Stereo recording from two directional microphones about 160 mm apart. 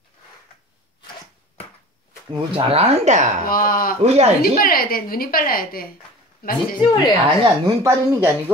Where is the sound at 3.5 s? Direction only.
60° left (ahead or behind).